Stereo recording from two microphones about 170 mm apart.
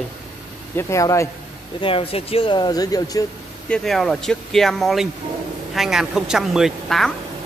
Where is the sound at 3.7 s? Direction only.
Centre (ahead or behind).